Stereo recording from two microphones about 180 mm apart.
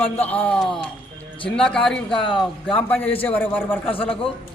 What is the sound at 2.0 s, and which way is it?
Speech, 30° left (ahead or behind).